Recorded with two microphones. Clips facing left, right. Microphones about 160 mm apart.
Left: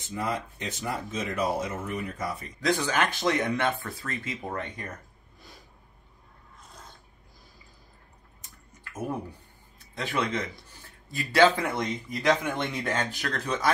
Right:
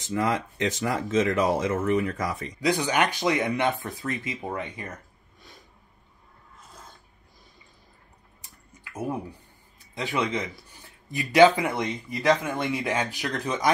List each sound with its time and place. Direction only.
0.0 s speech: 85° right
2.6 s speech: 15° right (ahead or behind)
9.9 s speech: 10° right (ahead or behind)